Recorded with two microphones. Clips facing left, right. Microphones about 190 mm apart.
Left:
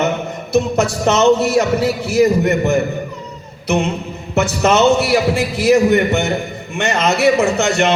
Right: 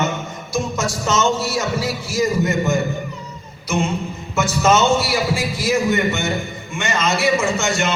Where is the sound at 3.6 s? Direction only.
65° left (ahead or behind).